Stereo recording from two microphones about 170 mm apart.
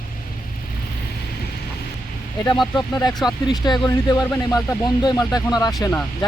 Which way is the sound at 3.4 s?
25° left (ahead or behind).